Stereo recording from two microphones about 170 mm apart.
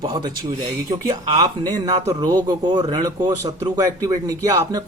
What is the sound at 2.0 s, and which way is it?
A man's voice, 20° right (ahead or behind).